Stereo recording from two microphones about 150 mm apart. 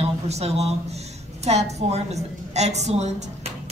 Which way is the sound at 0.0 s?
45° right (ahead or behind).